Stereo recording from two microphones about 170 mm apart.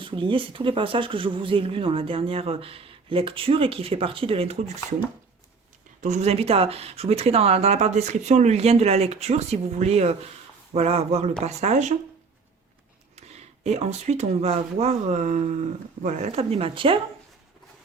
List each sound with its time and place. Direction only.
0.0 s speech: 30° right (ahead or behind)
6.0 s speech: 45° right (ahead or behind)
13.1 s speech: 40° right (ahead or behind)